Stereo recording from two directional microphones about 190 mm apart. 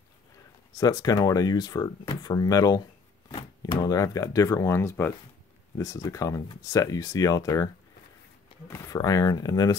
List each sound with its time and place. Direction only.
0.7 s speech: 20° left (ahead or behind)